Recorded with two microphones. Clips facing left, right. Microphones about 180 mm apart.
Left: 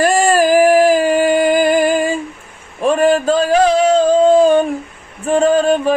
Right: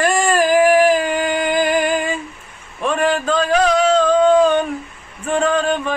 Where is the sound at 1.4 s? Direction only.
35° left (ahead or behind).